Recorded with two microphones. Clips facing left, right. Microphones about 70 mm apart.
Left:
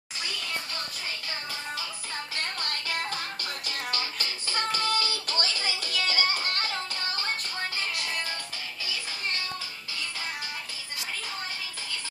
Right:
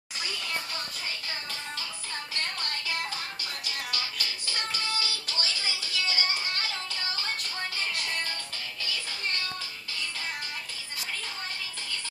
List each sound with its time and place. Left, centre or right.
3.6 s music: left